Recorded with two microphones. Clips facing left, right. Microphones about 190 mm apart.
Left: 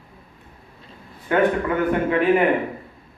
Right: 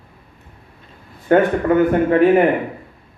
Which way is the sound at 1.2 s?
40° right (ahead or behind).